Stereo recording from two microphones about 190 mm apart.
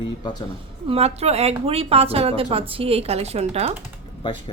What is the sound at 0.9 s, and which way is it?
A woman's voice, 35° right (ahead or behind).